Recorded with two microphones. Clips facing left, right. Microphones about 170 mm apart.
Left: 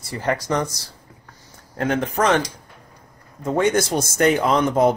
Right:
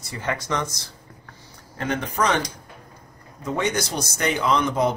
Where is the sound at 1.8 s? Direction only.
50° left (ahead or behind).